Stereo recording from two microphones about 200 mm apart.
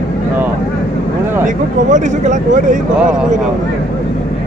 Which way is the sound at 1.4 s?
40° right (ahead or behind).